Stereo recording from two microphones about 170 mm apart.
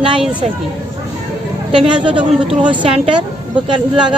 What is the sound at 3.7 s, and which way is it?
Speech, 30° right (ahead or behind).